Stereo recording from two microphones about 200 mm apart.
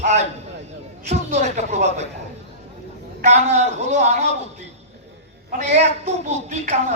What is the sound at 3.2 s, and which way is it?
Speech, 35° right (ahead or behind).